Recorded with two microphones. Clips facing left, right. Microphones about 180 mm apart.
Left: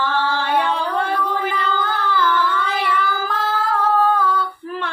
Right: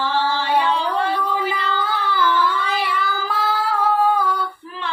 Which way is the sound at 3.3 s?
10° right (ahead or behind).